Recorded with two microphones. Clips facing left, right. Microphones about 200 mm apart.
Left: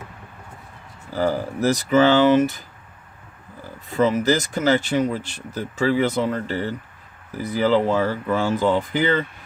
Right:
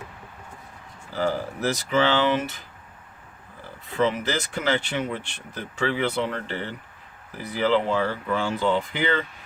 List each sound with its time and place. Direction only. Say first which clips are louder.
1.1 s speech: left 4 dB; 40° left (ahead or behind)
3.8 s speech: left 5 dB; 45° left (ahead or behind)